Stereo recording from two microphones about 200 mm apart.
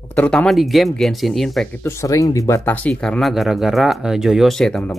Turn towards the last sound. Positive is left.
turn(degrees=5)  # may be behind; listen again after turning